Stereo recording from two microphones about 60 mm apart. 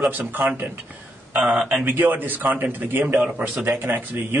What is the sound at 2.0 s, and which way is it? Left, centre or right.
A man's voice, right.